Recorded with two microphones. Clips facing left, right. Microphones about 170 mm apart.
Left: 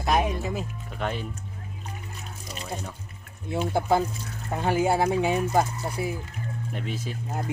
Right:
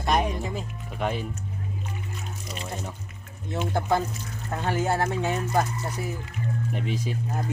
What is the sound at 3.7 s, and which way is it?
Speech, 10° left (ahead or behind).